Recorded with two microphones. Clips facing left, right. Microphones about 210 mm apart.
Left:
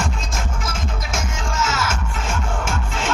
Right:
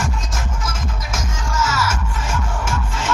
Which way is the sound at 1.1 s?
25° left (ahead or behind).